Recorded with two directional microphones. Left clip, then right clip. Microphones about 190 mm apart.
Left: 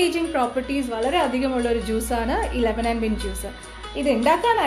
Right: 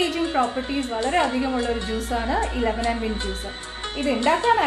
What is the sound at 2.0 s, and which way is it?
A woman's voice, 55° left (ahead or behind).